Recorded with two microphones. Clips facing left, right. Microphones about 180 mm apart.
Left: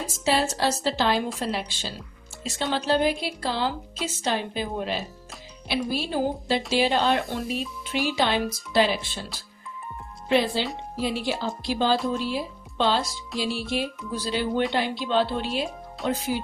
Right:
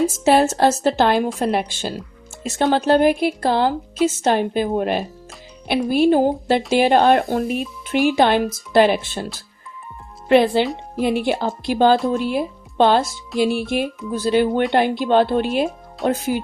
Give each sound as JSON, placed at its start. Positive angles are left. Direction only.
{"t": 0.3, "sound": "speech", "side_deg": -50}
{"t": 10.2, "sound": "speech", "side_deg": -60}